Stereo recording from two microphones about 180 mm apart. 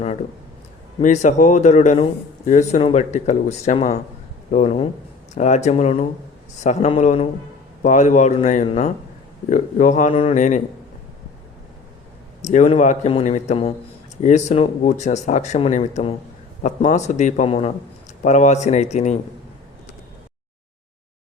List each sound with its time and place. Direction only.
1.0 s speech: 40° left (ahead or behind)
12.4 s speech: 40° left (ahead or behind)